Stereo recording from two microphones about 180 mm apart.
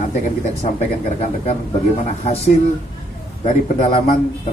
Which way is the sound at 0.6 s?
35° left (ahead or behind).